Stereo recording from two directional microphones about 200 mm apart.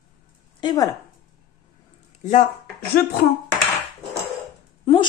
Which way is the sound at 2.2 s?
40° left (ahead or behind).